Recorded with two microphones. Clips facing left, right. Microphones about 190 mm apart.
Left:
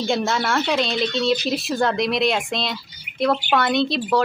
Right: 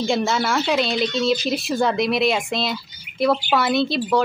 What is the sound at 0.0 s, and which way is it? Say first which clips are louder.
Speech: right 1 dB; centre (ahead or behind).